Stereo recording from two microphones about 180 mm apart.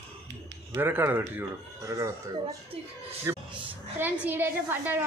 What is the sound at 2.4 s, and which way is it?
Speech, 35° right (ahead or behind).